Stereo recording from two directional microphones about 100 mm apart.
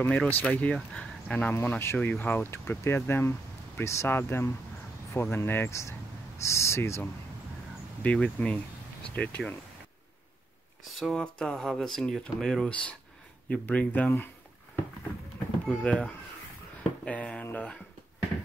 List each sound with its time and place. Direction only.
0.0 s speech: 10° left (ahead or behind); by 7.0 s 30° left (ahead or behind)
8.0 s speech: 15° left (ahead or behind)
11.0 s speech: 5° left (ahead or behind); by 14.3 s 20° left (ahead or behind)
15.6 s speech: 15° left (ahead or behind)
17.0 s a sound: 10° left (ahead or behind)